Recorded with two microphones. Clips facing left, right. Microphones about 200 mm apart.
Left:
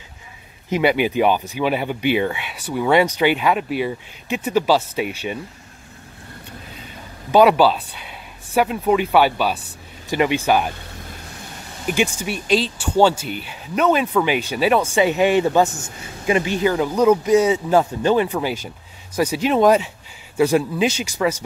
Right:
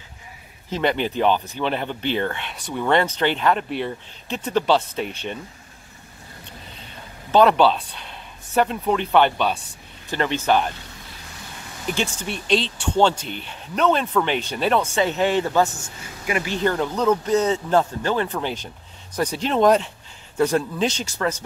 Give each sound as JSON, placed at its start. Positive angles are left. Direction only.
{"t": 0.7, "sound": "speech", "side_deg": 10}
{"t": 7.2, "sound": "speech", "side_deg": 10}
{"t": 11.9, "sound": "speech", "side_deg": 10}
{"t": 16.5, "sound": "speech", "side_deg": 5}